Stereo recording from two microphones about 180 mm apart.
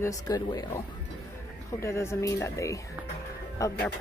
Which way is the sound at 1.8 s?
15° left (ahead or behind).